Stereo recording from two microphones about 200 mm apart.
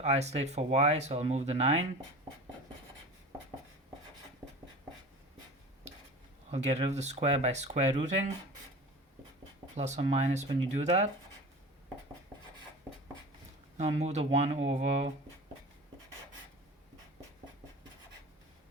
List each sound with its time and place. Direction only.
0.0 s speech: 35° right (ahead or behind)
2.3 s a sound: 25° right (ahead or behind)
4.4 s writing: 25° right (ahead or behind)
6.5 s speech: 35° right (ahead or behind)
9.7 s speech: 35° right (ahead or behind)
13.7 s speech: 35° right (ahead or behind)